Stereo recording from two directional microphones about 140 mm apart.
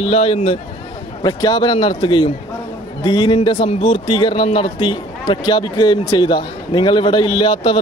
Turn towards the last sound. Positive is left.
turn(degrees=40)  # may be behind; listen again after turning